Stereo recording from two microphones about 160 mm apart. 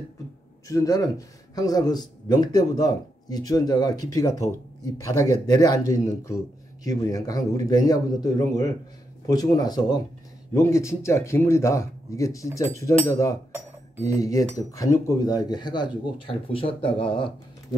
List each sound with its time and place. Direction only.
0.7 s speech: 20° left (ahead or behind)